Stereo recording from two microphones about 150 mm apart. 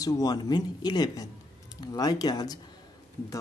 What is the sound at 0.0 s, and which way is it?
Speech, 25° left (ahead or behind).